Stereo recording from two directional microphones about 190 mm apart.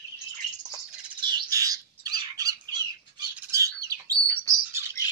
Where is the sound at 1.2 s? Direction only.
20° right (ahead or behind).